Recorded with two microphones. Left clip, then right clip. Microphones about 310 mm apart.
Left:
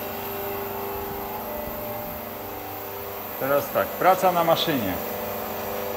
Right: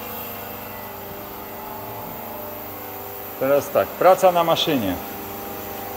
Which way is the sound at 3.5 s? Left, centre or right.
Right.